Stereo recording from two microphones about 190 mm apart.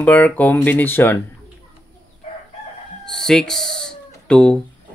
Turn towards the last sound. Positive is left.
turn(degrees=5)  # may be behind; listen again after turning